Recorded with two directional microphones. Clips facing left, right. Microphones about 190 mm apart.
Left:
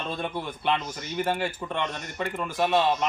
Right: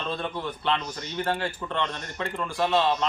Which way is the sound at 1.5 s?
20° left (ahead or behind).